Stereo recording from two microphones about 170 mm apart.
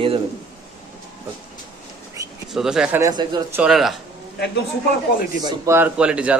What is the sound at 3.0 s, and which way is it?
Speech, 25° right (ahead or behind).